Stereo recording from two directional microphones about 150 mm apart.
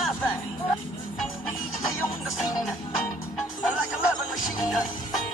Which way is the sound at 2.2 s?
Centre (ahead or behind).